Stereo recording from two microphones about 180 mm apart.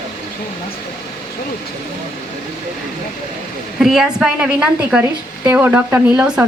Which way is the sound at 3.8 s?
Centre (ahead or behind).